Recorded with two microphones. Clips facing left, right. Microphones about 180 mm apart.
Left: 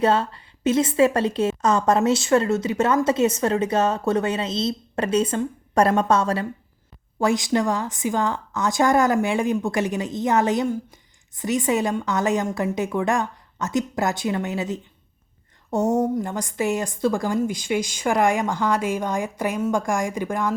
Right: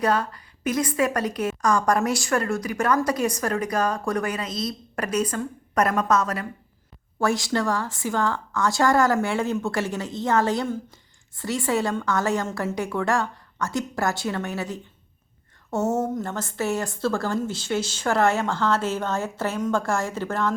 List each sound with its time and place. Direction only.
0.0 s a woman's voice: 25° left (ahead or behind)
7.2 s a woman's voice: 20° left (ahead or behind)